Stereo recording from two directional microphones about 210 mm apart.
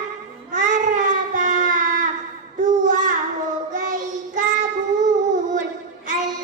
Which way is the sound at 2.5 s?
35° right (ahead or behind).